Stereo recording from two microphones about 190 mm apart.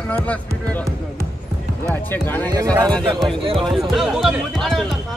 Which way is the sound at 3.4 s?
30° right (ahead or behind).